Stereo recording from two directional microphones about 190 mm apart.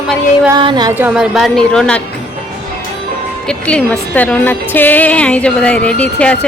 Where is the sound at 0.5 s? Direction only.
20° right (ahead or behind).